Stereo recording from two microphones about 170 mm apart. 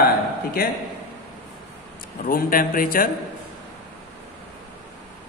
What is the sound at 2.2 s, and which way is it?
Speech, 55° left (ahead or behind).